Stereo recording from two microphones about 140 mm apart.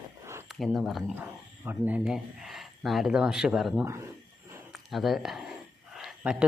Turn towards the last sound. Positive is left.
turn(degrees=-10)  # may be behind; listen again after turning